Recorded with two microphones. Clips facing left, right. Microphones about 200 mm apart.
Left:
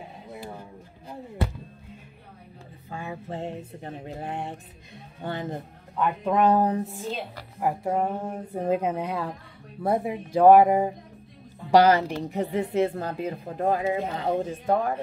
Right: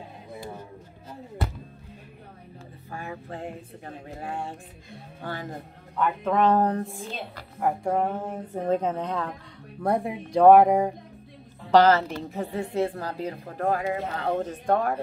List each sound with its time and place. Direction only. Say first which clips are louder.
2.9 s music: left 2 dB; 20° left (ahead or behind)
5.2 s a woman's voice: left 3 dB; 20° left (ahead or behind); by 11.0 s centre (ahead or behind)
11.7 s a woman's voice: even; 15° left (ahead or behind)